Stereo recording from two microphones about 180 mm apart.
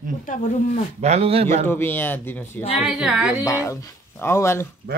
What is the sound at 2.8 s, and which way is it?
Speech, 5° right (ahead or behind).